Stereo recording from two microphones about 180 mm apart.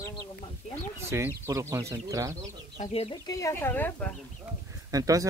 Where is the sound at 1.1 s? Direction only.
15° right (ahead or behind).